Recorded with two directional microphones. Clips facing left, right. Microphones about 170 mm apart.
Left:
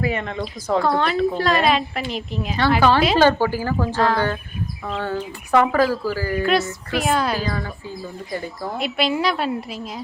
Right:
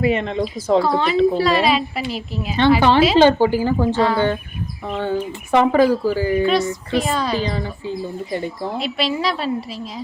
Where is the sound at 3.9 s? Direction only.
Centre (ahead or behind).